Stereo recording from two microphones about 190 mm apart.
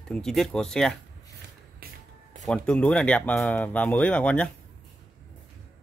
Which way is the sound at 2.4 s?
5° left (ahead or behind).